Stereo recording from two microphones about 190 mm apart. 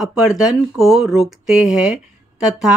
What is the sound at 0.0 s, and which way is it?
Speech, centre (ahead or behind).